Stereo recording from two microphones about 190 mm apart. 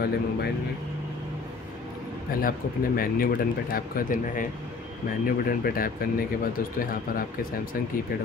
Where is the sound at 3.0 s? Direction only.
50° left (ahead or behind).